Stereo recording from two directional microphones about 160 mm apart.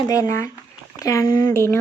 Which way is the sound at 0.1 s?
20° left (ahead or behind).